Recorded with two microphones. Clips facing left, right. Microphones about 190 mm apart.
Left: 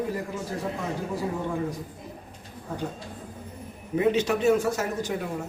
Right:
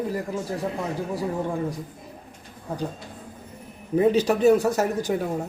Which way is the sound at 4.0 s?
35° right (ahead or behind).